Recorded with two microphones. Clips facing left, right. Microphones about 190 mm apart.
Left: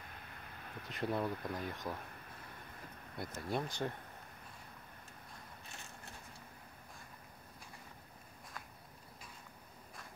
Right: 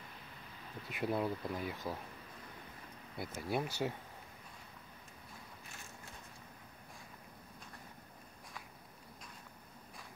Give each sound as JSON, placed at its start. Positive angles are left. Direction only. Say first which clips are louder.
{"t": 0.8, "sound": "speech", "louder": "right 1 dB", "side_deg": -10}
{"t": 1.3, "sound": "speech", "louder": "right 1 dB", "side_deg": 55}
{"t": 1.7, "sound": "speech", "louder": "right 1 dB", "side_deg": -10}
{"t": 3.2, "sound": "speech", "louder": "right 1 dB", "side_deg": -5}